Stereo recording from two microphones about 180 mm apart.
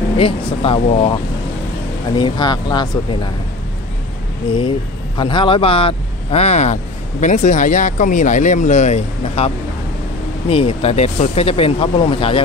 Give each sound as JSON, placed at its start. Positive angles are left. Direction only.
{"t": 0.2, "sound": "speech", "side_deg": 30}
{"t": 2.1, "sound": "speech", "side_deg": 25}
{"t": 4.6, "sound": "speech", "side_deg": 25}
{"t": 10.5, "sound": "speech", "side_deg": 30}